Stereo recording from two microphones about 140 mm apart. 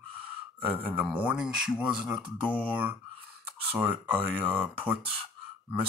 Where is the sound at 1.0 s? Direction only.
5° right (ahead or behind).